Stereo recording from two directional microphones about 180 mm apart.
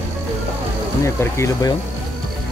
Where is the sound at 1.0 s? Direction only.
15° left (ahead or behind).